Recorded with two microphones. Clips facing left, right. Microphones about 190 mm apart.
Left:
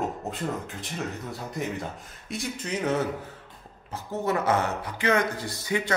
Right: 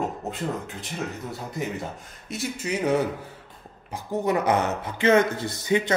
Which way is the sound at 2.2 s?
5° right (ahead or behind).